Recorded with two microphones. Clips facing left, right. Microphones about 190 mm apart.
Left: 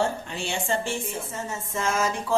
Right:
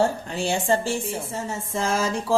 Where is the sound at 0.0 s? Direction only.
40° right (ahead or behind).